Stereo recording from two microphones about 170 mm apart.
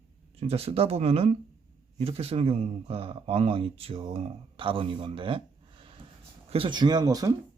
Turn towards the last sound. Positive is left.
turn(degrees=-20)  # may be behind; listen again after turning